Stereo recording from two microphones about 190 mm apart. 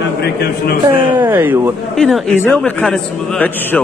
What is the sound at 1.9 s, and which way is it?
A man's voice, centre (ahead or behind).